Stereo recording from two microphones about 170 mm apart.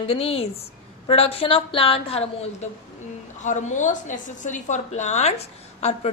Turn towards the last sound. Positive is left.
turn(degrees=40)  # may be behind; listen again after turning